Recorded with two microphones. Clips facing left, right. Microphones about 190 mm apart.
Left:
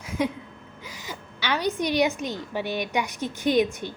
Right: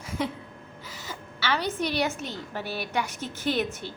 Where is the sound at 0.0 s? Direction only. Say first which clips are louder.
Left 4 dB; 10° left (ahead or behind).